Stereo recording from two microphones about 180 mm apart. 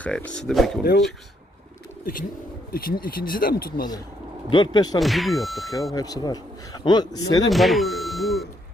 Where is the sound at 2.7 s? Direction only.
55° left (ahead or behind).